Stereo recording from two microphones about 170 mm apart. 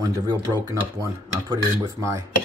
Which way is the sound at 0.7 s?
20° right (ahead or behind).